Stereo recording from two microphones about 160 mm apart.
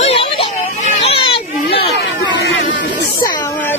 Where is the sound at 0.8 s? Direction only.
35° left (ahead or behind).